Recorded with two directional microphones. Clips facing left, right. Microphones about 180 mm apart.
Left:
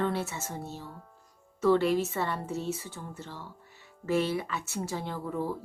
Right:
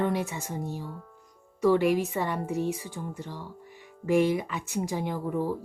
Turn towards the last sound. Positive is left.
turn(degrees=-15)  # may be behind; listen again after turning